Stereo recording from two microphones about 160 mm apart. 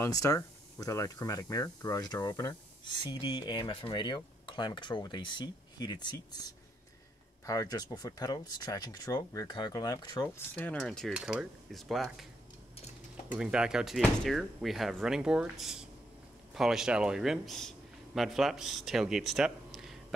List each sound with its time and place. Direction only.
0.0 s speech: 20° left (ahead or behind); by 12.3 s centre (ahead or behind)
13.4 s a man's voice: 5° right (ahead or behind)